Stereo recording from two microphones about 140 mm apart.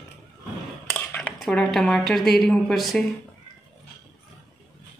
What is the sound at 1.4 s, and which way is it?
A woman's voice, 5° left (ahead or behind).